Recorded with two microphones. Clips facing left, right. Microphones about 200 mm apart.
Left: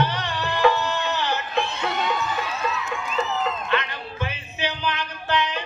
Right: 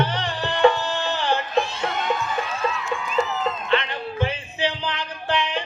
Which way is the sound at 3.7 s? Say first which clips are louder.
Right 3 dB; 30° right (ahead or behind).